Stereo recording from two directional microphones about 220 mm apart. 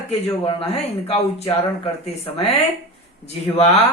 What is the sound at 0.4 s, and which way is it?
A woman's voice, 25° left (ahead or behind).